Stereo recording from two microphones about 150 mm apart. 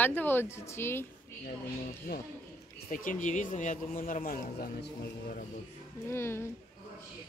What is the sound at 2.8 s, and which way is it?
Speech, 65° left (ahead or behind).